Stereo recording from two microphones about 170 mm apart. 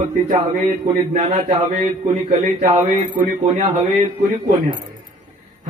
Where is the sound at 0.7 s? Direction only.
50° right (ahead or behind).